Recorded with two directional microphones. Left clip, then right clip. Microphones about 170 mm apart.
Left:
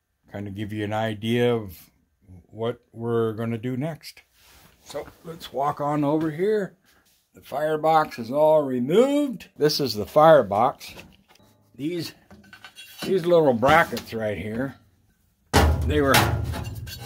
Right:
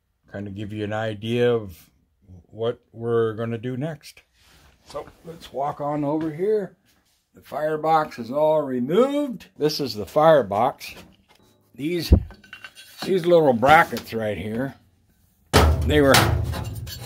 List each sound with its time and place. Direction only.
0.3 s speech: 5° left (ahead or behind)
4.8 s speech: 20° left (ahead or behind)
10.2 s speech: 5° left (ahead or behind)
10.8 s a sound: 10° right (ahead or behind)
12.4 s a sound: 30° right (ahead or behind)
13.1 s speech: 10° right (ahead or behind)
15.9 s music: 25° right (ahead or behind)